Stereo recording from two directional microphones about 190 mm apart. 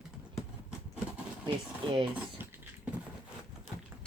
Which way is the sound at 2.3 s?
10° right (ahead or behind).